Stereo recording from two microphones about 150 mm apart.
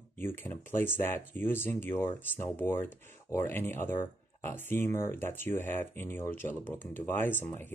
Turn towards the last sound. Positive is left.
turn(degrees=15)  # may be behind; listen again after turning